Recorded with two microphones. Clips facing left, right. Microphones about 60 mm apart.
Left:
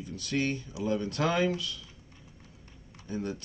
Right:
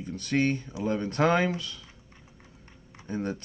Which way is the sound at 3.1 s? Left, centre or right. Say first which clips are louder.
Right 3 dB; right.